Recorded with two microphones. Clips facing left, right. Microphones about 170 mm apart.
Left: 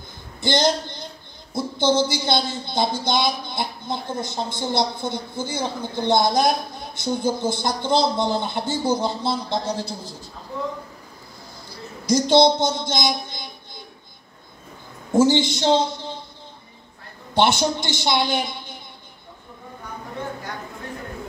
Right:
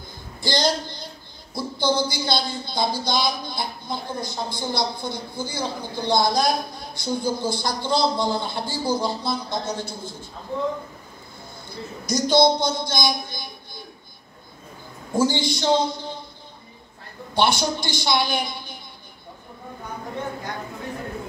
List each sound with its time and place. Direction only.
0.4 s a woman's voice: 20° left (ahead or behind)
12.1 s a woman's voice: 25° left (ahead or behind)
15.1 s a woman's voice: 20° left (ahead or behind)
17.3 s a man's voice: 25° left (ahead or behind)